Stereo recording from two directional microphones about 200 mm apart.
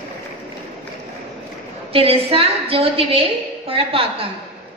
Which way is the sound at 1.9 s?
30° right (ahead or behind).